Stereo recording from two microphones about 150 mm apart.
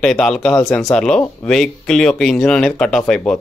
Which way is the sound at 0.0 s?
5° left (ahead or behind).